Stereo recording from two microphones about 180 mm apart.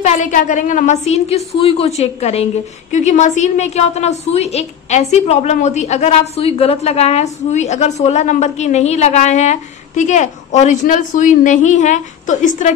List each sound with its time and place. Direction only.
0.0 s a woman's voice: 45° left (ahead or behind)